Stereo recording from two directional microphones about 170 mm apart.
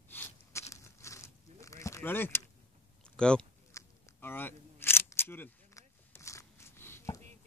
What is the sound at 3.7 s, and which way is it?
Single-lens reflex camera, 10° left (ahead or behind).